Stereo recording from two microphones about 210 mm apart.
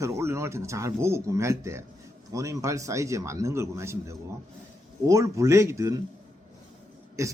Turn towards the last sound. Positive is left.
turn(degrees=-15)  # may be behind; listen again after turning